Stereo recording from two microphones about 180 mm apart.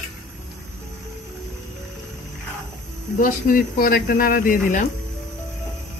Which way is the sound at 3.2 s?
50° left (ahead or behind).